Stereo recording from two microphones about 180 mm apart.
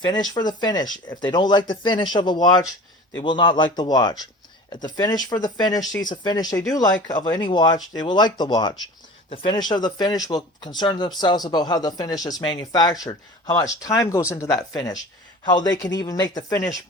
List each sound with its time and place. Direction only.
0.0 s speech: 20° left (ahead or behind)